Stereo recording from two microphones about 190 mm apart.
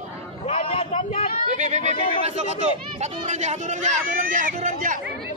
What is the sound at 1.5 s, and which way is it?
Speech, 40° right (ahead or behind).